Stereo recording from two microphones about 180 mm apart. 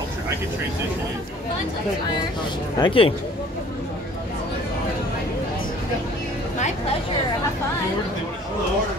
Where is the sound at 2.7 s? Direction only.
30° left (ahead or behind).